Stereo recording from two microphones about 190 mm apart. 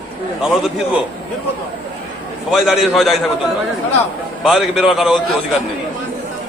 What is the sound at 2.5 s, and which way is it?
Speech, centre (ahead or behind).